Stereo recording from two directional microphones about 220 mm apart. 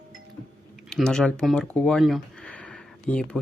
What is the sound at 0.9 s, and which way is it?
Speech, 5° left (ahead or behind).